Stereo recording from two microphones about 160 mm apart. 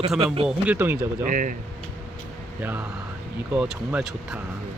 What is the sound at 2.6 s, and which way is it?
Speech, 10° right (ahead or behind).